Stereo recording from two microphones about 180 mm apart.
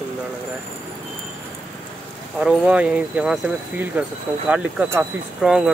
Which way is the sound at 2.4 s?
5° right (ahead or behind).